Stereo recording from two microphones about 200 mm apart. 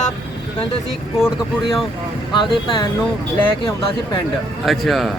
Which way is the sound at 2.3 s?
25° left (ahead or behind).